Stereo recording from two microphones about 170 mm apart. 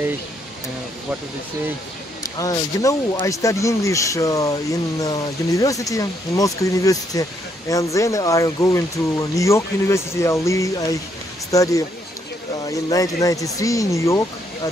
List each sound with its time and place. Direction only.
2.3 s speech: 20° left (ahead or behind)